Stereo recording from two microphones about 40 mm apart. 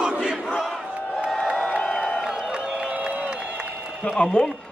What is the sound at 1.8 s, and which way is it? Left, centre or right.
Crowd, left.